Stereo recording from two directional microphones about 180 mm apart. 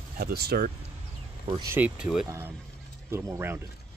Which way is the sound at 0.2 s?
60° right (ahead or behind).